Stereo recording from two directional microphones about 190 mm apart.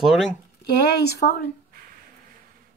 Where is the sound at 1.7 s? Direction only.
50° right (ahead or behind).